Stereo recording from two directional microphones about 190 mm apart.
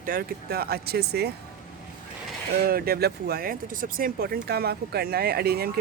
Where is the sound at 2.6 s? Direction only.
55° right (ahead or behind).